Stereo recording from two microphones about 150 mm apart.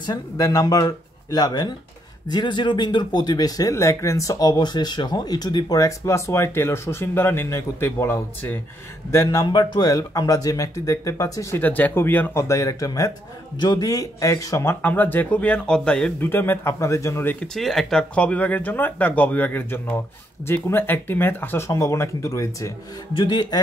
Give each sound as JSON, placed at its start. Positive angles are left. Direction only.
{"t": 0.0, "sound": "speech", "side_deg": 25}
{"t": 11.6, "sound": "speech", "side_deg": 10}
{"t": 17.6, "sound": "speech", "side_deg": 0}